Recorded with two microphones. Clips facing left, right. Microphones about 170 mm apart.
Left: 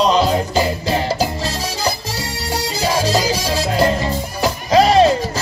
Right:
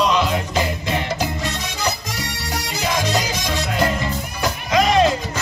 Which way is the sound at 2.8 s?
35° left (ahead or behind).